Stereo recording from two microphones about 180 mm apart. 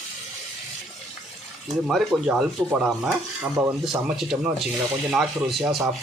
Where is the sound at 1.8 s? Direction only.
Centre (ahead or behind).